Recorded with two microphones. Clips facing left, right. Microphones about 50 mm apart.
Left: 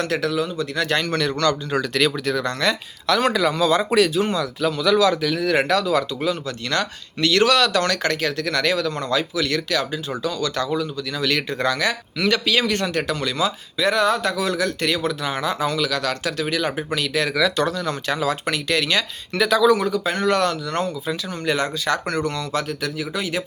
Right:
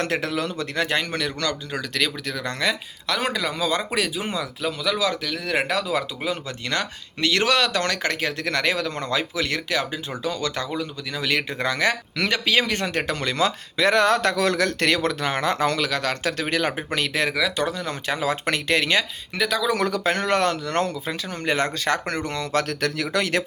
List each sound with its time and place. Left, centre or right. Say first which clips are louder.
0.0 s speech: left 2 dB; right
0.3 s speech: left 3 dB; right
0.9 s speech: left 3 dB; centre
4.2 s speech: left 6 dB; centre
4.8 s speech: left 7 dB; centre
6.2 s speech: left 3 dB; right
15.9 s speech: left 1 dB; right
17.3 s speech: left 3 dB; centre
18.4 s speech: even; right
19.4 s speech: left 5 dB; centre
19.7 s speech: left 2 dB; right
22.5 s speech: right 1 dB; right